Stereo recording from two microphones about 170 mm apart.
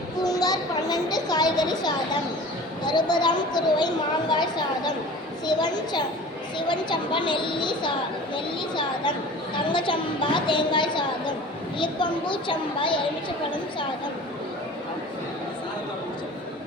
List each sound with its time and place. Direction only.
0.2 s a sound: 20° left (ahead or behind)
2.8 s speech: 25° left (ahead or behind)
5.5 s speech: 25° left (ahead or behind)